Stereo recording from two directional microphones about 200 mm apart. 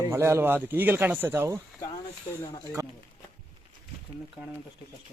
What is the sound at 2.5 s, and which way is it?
Speech, 15° left (ahead or behind).